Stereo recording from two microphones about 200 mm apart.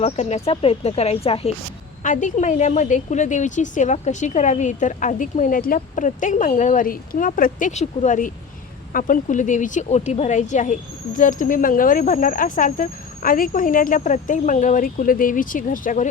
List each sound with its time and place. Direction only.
0.0 s a woman's voice: 35° left (ahead or behind)